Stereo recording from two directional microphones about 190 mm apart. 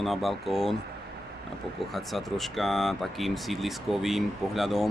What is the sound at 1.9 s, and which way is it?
Speech, centre (ahead or behind).